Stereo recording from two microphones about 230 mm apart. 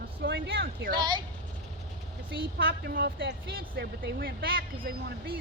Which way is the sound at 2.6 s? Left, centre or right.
Right.